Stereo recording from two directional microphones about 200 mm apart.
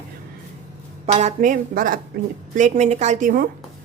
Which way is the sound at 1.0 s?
30° right (ahead or behind).